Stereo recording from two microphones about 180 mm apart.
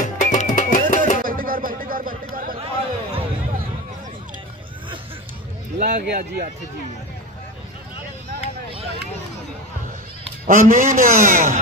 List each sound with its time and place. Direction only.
0.0 s music: 45° left (ahead or behind)
1.2 s chatter: 50° right (ahead or behind)
2.6 s a sound: 30° right (ahead or behind)
6.0 s speech: 55° right (ahead or behind)
10.4 s a man's voice: 50° right (ahead or behind)